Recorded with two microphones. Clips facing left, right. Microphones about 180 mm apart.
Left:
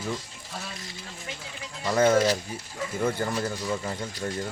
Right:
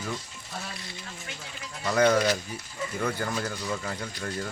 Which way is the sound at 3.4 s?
15° left (ahead or behind).